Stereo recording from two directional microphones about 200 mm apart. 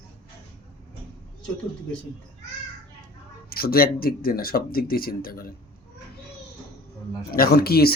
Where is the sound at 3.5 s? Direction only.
50° left (ahead or behind).